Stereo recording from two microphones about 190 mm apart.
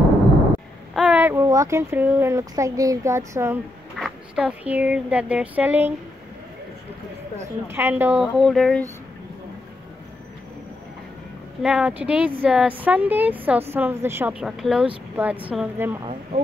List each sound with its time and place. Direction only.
0.9 s speech: 5° right (ahead or behind)
3.9 s speech: centre (ahead or behind)
7.3 s a woman's voice: 10° right (ahead or behind)
11.6 s a woman's voice: 5° right (ahead or behind)
16.0 s a sound: 30° right (ahead or behind)